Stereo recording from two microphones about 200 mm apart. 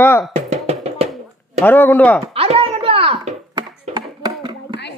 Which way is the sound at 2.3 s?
30° right (ahead or behind).